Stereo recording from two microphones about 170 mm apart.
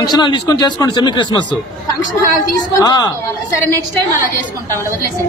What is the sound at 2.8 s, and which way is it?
Speech, 20° left (ahead or behind).